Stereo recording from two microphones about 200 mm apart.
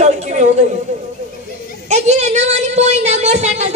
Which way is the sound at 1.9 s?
35° right (ahead or behind).